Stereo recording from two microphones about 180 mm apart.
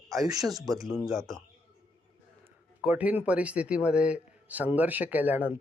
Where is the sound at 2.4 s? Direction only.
10° right (ahead or behind).